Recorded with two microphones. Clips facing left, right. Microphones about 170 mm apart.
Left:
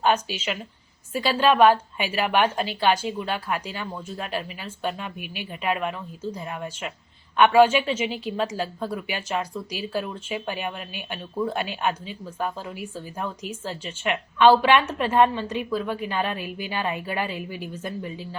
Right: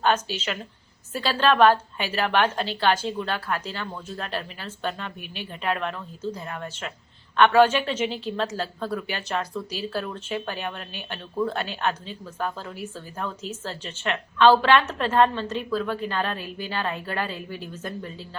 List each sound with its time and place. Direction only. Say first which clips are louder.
0.0 s speech: left 1 dB; 10° left (ahead or behind)